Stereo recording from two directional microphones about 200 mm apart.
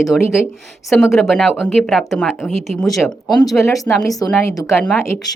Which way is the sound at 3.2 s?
20° left (ahead or behind).